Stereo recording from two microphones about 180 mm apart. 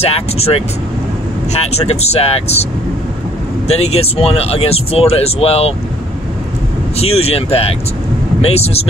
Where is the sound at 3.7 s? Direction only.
35° left (ahead or behind).